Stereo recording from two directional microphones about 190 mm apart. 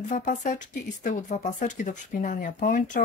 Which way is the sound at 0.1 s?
45° left (ahead or behind).